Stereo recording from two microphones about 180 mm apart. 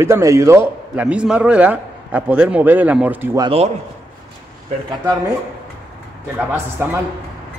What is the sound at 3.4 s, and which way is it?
Speech, 30° right (ahead or behind).